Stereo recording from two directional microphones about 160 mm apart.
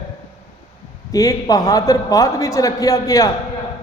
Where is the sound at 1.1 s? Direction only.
20° left (ahead or behind).